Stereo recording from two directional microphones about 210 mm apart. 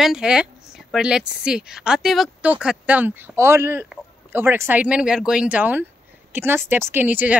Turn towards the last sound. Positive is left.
turn(degrees=-10)  # may be behind; listen again after turning